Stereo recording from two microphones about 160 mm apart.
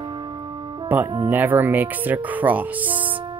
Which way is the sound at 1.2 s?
10° right (ahead or behind).